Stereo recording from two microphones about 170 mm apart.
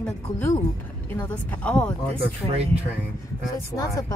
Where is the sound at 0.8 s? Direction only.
10° left (ahead or behind).